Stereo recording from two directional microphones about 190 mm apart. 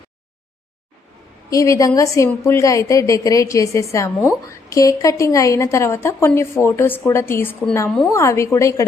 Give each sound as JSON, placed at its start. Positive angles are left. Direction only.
{"t": 1.5, "sound": "a woman's voice", "side_deg": 15}
{"t": 7.9, "sound": "a woman's voice", "side_deg": 0}
{"t": 8.1, "sound": "a woman's voice", "side_deg": 15}